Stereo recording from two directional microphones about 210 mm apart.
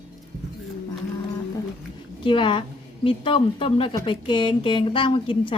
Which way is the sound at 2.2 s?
25° left (ahead or behind).